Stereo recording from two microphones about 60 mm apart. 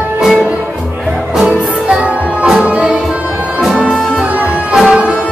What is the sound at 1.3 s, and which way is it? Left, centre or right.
Music, centre.